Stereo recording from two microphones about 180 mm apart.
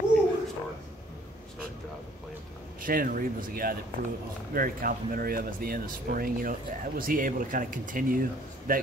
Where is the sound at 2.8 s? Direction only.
50° right (ahead or behind).